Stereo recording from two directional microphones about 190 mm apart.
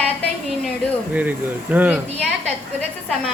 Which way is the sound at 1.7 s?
10° right (ahead or behind).